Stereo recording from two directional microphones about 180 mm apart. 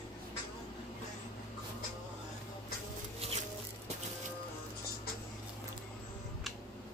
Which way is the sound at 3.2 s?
35° right (ahead or behind).